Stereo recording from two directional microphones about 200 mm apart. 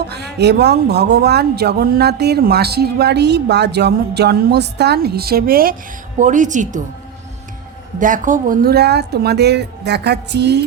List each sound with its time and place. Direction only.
0.1 s speech: 55° right (ahead or behind); by 6.8 s 40° right (ahead or behind)
7.9 s speech: 40° right (ahead or behind); by 10.6 s 55° right (ahead or behind)